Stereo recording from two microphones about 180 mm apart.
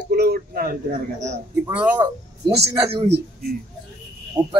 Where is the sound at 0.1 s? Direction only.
60° right (ahead or behind).